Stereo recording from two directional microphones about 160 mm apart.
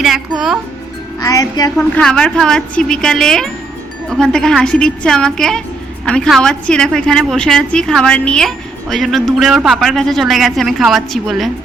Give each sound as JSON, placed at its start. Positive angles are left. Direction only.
{"t": 0.0, "sound": "a woman's voice", "side_deg": 0}
{"t": 1.2, "sound": "speech", "side_deg": 20}
{"t": 1.7, "sound": "a woman's voice", "side_deg": 5}